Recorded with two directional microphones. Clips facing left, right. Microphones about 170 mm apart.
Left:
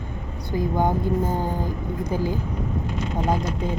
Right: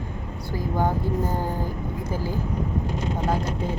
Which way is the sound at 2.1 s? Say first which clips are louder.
Left 5 dB; 15° left (ahead or behind).